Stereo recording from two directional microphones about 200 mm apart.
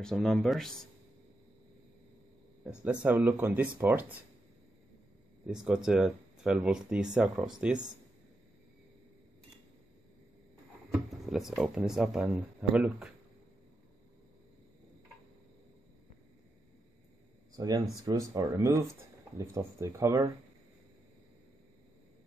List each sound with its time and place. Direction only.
0.0 s speech: centre (ahead or behind)
2.8 s speech: 5° right (ahead or behind)
5.5 s speech: 5° right (ahead or behind)
10.9 s speech: 5° right (ahead or behind)
17.6 s speech: 20° right (ahead or behind)